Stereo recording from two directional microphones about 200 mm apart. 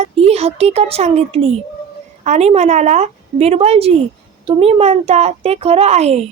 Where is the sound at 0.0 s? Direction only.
30° right (ahead or behind).